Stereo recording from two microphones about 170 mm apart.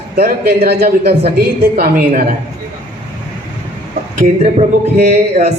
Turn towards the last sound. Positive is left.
turn(degrees=-40)  # may be behind; listen again after turning